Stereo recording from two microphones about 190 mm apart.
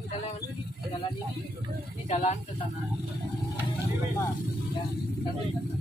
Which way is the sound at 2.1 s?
35° left (ahead or behind).